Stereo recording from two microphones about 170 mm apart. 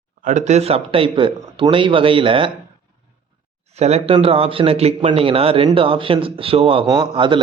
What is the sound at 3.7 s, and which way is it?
A man's voice, 40° right (ahead or behind).